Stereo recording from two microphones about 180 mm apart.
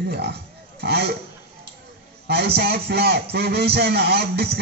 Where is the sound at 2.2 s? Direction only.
65° right (ahead or behind).